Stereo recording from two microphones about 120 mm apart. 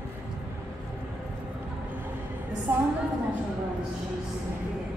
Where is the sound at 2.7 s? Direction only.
20° right (ahead or behind).